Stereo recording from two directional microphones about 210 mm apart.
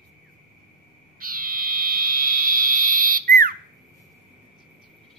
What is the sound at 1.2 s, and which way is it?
Frog, 45° right (ahead or behind).